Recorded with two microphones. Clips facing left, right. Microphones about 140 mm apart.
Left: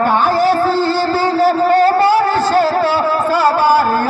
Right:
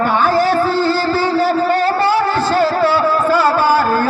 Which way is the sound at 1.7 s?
40° left (ahead or behind).